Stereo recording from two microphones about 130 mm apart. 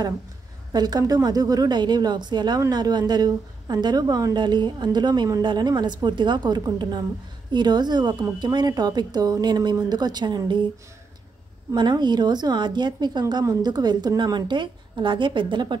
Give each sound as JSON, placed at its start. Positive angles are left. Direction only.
{"t": 0.7, "sound": "a woman's voice", "side_deg": -30}
{"t": 11.7, "sound": "a woman's voice", "side_deg": -35}